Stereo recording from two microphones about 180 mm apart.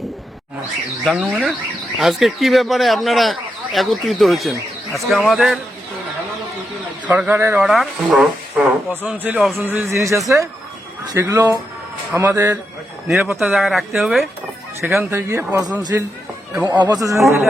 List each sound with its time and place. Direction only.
1.0 s speech: 5° right (ahead or behind)
7.1 s speech: 10° right (ahead or behind)
14.8 s speech: 15° right (ahead or behind)